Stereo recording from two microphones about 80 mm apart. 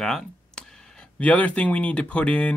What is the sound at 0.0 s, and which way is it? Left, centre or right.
Speech, centre.